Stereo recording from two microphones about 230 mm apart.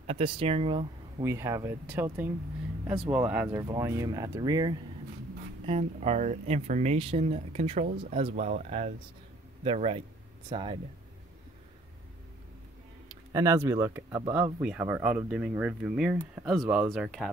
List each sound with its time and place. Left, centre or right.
0.0 s speech: right
1.2 s speech: centre
5.7 s speech: right
13.1 s speech: centre